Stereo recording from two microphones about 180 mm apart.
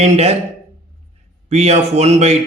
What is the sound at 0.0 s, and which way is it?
Speech, 35° right (ahead or behind).